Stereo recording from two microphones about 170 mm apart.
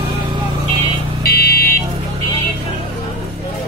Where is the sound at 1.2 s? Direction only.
70° left (ahead or behind).